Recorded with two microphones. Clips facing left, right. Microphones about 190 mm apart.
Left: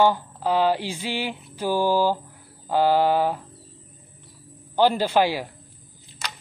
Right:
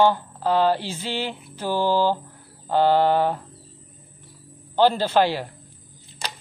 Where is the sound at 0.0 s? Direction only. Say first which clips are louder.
Right 1 dB; 10° left (ahead or behind).